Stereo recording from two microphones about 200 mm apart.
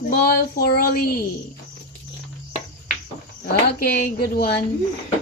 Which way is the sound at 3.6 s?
50° left (ahead or behind).